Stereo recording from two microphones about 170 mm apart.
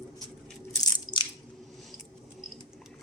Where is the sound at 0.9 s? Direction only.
25° left (ahead or behind).